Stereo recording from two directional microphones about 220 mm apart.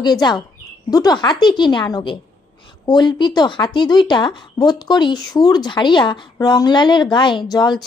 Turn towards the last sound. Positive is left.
turn(degrees=20)  # may be behind; listen again after turning